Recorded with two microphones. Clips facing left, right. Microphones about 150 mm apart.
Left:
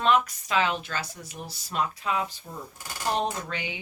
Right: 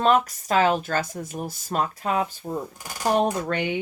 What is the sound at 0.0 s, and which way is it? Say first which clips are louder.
Speech: right 3 dB; 45° right (ahead or behind).